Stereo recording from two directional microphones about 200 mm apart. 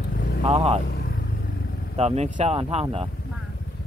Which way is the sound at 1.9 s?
35° right (ahead or behind).